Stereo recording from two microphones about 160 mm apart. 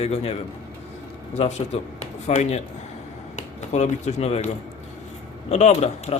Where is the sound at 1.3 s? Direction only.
45° left (ahead or behind).